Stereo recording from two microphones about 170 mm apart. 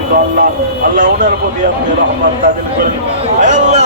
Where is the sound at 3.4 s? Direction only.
45° right (ahead or behind).